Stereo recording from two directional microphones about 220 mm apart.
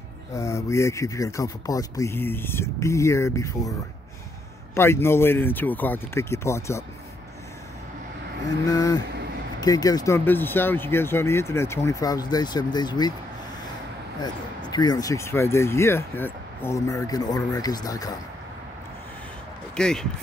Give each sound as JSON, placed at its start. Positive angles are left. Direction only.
{"t": 0.3, "sound": "speech", "side_deg": 15}
{"t": 4.7, "sound": "speech", "side_deg": 10}
{"t": 8.6, "sound": "speech", "side_deg": 15}
{"t": 14.2, "sound": "speech", "side_deg": 20}
{"t": 19.7, "sound": "speech", "side_deg": 5}